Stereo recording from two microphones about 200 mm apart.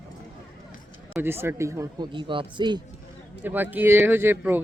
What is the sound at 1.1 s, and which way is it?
Speech, 10° right (ahead or behind).